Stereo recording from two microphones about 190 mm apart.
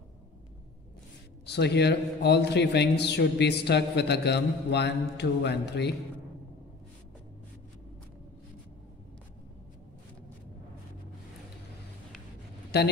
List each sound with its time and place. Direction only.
1.4 s a man's voice: 60° left (ahead or behind)
12.7 s a man's voice: 60° left (ahead or behind)